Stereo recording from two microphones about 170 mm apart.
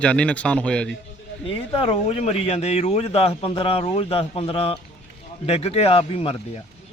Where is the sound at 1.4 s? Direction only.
30° left (ahead or behind).